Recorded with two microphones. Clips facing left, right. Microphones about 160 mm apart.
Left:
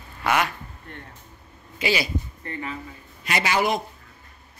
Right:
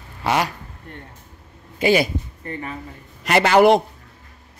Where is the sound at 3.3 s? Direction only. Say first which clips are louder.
Right 10 dB; 60° right (ahead or behind).